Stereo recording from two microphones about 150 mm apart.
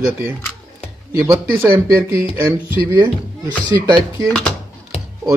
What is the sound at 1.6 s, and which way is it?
Speech, 15° right (ahead or behind).